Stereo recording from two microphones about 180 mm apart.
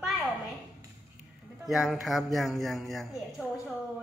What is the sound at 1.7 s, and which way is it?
Speech, centre (ahead or behind).